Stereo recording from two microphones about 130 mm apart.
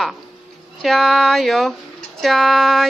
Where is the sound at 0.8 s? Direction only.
Centre (ahead or behind).